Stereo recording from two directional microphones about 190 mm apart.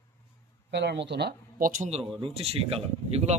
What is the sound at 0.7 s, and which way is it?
Speech, 65° right (ahead or behind).